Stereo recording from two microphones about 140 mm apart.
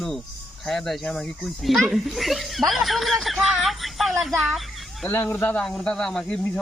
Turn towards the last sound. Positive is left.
turn(degrees=5)  # may be behind; listen again after turning